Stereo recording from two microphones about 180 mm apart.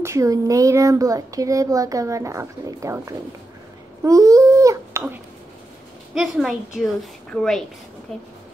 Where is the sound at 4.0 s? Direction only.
20° right (ahead or behind).